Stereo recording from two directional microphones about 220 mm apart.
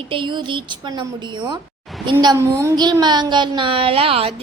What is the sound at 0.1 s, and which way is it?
Speech, 20° right (ahead or behind).